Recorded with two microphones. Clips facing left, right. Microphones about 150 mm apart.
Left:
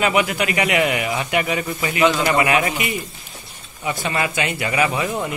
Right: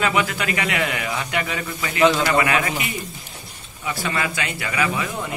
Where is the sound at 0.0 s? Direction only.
15° left (ahead or behind).